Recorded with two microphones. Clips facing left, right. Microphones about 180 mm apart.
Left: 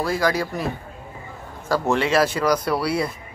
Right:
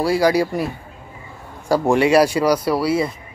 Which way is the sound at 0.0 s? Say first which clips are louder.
Right 6 dB; 10° right (ahead or behind).